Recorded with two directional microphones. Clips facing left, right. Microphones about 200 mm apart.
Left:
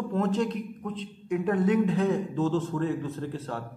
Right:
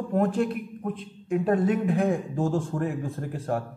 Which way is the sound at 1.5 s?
30° right (ahead or behind).